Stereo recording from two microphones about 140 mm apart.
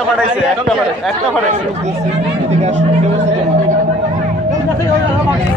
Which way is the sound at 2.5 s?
55° right (ahead or behind).